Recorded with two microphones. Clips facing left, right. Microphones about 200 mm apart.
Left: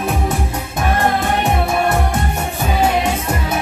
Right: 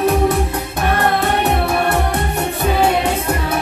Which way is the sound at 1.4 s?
65° right (ahead or behind).